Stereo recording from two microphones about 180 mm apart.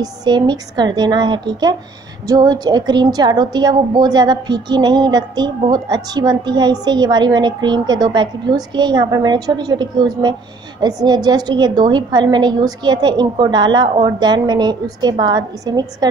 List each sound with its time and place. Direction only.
0.0 s a woman's voice: 25° right (ahead or behind)